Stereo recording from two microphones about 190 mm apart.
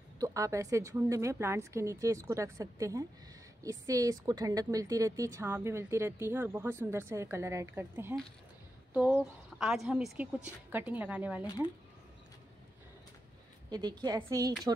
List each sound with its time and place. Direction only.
0.2 s a woman's voice: 15° right (ahead or behind)
13.7 s a woman's voice: 20° right (ahead or behind)